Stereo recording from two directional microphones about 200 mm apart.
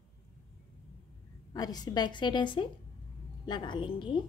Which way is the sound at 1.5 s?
20° left (ahead or behind).